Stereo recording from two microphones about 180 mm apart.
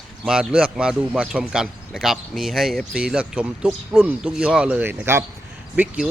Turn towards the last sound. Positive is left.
turn(degrees=-5)  # may be behind; listen again after turning